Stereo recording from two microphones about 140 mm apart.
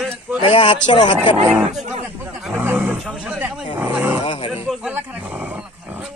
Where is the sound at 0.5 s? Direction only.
35° left (ahead or behind).